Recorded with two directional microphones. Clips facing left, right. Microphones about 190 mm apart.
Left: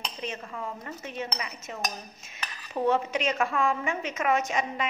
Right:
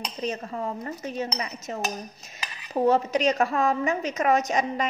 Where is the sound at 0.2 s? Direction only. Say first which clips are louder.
Right 7 dB; 40° right (ahead or behind).